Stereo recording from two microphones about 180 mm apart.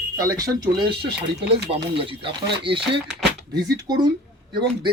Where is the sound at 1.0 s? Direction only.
65° right (ahead or behind).